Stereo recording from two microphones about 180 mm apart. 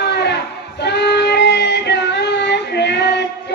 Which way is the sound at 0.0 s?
70° left (ahead or behind).